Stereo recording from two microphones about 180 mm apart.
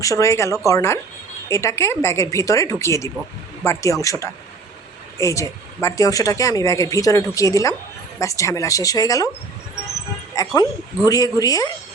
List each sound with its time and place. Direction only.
0.0 s a woman's voice: 15° left (ahead or behind)
10.3 s a woman's voice: 20° left (ahead or behind)